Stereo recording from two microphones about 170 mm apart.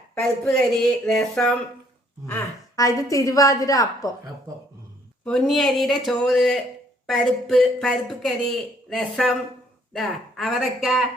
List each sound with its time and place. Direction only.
0.1 s speech: 5° left (ahead or behind)
2.2 s a woman's voice: 15° left (ahead or behind)
5.2 s speech: centre (ahead or behind)
10.3 s speech: centre (ahead or behind)